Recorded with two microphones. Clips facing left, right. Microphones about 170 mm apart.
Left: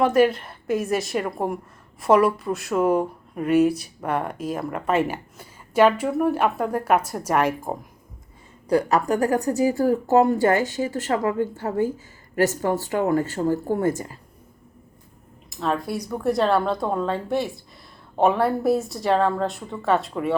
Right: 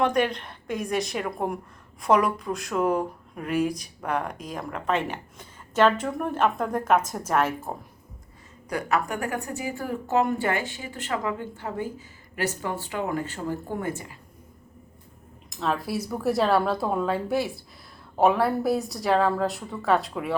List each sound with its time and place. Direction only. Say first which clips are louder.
0.0 s a woman's voice: left 5 dB; 5° left (ahead or behind)
8.7 s speech: left 7 dB; 35° left (ahead or behind)
15.4 s speech: left 2 dB; centre (ahead or behind)